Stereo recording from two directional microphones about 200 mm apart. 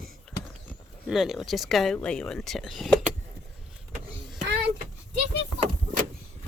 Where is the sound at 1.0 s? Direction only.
Centre (ahead or behind).